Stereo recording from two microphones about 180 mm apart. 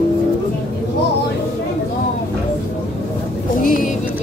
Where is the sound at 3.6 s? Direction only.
50° left (ahead or behind).